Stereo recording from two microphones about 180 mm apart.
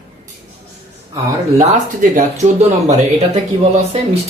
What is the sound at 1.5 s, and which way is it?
Speech, 45° right (ahead or behind).